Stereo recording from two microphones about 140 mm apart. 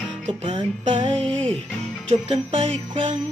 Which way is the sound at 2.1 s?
45° right (ahead or behind).